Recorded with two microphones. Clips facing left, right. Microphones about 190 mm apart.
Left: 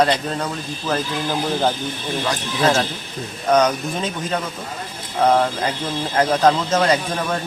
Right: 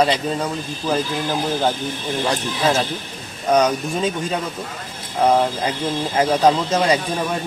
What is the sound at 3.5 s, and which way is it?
Speech, 10° right (ahead or behind).